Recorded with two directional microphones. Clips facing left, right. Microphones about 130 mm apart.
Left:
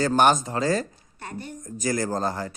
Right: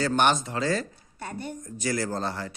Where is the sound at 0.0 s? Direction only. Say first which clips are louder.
Left 4 dB; 40° left (ahead or behind).